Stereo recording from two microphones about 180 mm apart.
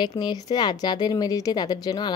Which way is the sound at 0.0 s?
25° left (ahead or behind).